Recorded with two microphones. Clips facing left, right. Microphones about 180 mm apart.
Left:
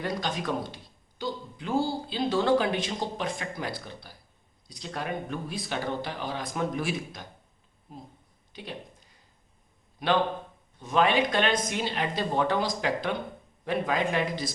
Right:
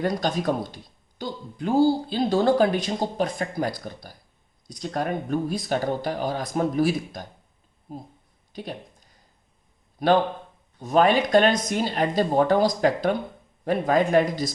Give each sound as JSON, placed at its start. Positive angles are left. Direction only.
{"t": 0.0, "sound": "speech", "side_deg": -40}
{"t": 10.0, "sound": "speech", "side_deg": -40}